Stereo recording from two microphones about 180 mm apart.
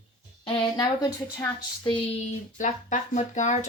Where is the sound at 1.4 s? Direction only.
15° left (ahead or behind).